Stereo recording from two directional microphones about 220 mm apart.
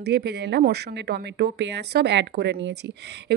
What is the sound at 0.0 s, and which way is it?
Speech, 50° right (ahead or behind).